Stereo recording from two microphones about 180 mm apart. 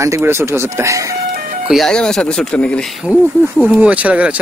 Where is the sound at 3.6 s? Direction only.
10° right (ahead or behind).